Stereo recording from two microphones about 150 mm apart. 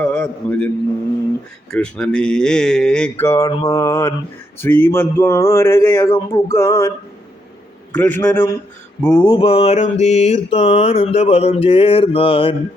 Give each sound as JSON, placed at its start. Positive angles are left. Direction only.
{"t": 0.0, "sound": "a man's voice", "side_deg": 5}
{"t": 1.7, "sound": "speech", "side_deg": 5}
{"t": 3.2, "sound": "speech", "side_deg": 15}
{"t": 3.7, "sound": "mantra", "side_deg": 20}
{"t": 4.5, "sound": "speech", "side_deg": 15}
{"t": 7.9, "sound": "speech", "side_deg": 10}
{"t": 9.0, "sound": "mantra", "side_deg": 20}
{"t": 9.3, "sound": "mantra", "side_deg": 35}